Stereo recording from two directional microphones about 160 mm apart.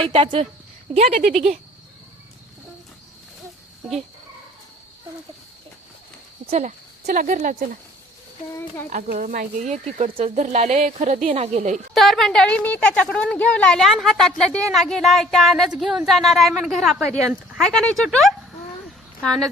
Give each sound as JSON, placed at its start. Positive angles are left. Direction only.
{"t": 0.0, "sound": "speech", "side_deg": -35}
{"t": 6.5, "sound": "speech", "side_deg": -50}
{"t": 8.9, "sound": "speech", "side_deg": -55}
{"t": 11.9, "sound": "a woman's voice", "side_deg": 0}